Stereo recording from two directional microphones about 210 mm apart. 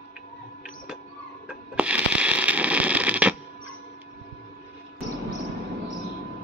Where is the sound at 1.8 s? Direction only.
5° right (ahead or behind).